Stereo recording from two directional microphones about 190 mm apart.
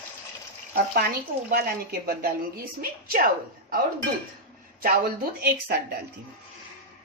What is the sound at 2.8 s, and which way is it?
Speech, 50° right (ahead or behind).